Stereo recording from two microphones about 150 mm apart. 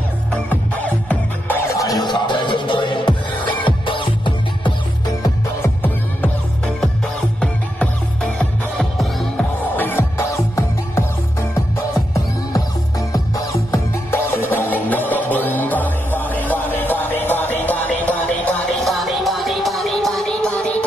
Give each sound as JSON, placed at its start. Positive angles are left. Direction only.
{"t": 0.3, "sound": "music", "side_deg": 10}
{"t": 1.8, "sound": "music", "side_deg": 25}
{"t": 5.2, "sound": "music", "side_deg": 15}
{"t": 7.3, "sound": "music", "side_deg": 5}
{"t": 9.8, "sound": "music", "side_deg": 15}
{"t": 13.1, "sound": "music", "side_deg": 20}
{"t": 18.9, "sound": "music", "side_deg": 0}